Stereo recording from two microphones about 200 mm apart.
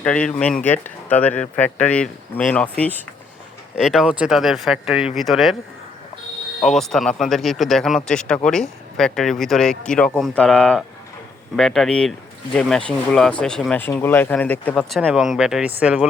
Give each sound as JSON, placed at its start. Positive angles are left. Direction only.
{"t": 0.0, "sound": "speech", "side_deg": 5}
{"t": 3.8, "sound": "speech", "side_deg": -5}
{"t": 6.6, "sound": "speech", "side_deg": 0}